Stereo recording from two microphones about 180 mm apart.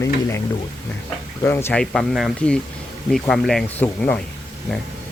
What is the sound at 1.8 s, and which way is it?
Speech, centre (ahead or behind).